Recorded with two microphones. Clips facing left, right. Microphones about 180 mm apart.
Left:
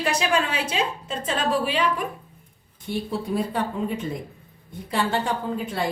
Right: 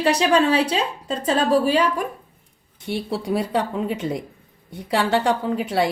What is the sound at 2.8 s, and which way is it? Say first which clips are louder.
A woman's voice: right 2 dB; 80° right.